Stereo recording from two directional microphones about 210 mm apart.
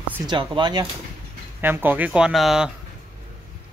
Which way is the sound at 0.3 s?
20° right (ahead or behind).